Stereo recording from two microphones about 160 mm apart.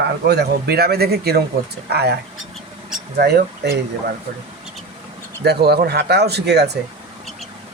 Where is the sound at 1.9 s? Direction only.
90° right.